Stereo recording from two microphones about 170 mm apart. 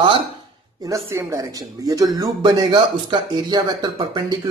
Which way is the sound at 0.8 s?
15° right (ahead or behind).